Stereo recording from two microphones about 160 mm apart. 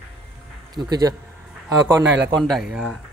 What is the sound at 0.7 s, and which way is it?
Speech, 25° right (ahead or behind).